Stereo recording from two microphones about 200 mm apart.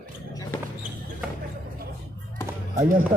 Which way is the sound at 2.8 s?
40° right (ahead or behind).